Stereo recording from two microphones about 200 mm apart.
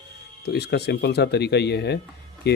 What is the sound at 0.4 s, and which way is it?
Speech, 55° left (ahead or behind).